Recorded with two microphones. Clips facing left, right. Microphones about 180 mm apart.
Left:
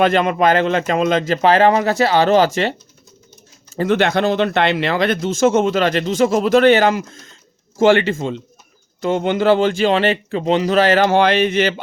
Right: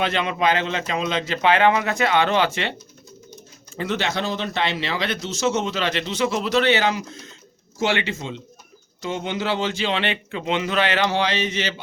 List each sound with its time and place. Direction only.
0.0 s speech: 50° left (ahead or behind)
3.8 s speech: 55° left (ahead or behind)